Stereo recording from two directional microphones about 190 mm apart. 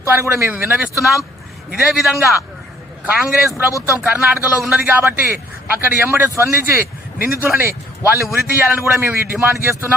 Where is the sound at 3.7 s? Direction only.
15° left (ahead or behind).